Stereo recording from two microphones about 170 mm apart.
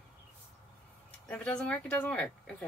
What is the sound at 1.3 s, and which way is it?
Speech, 5° left (ahead or behind).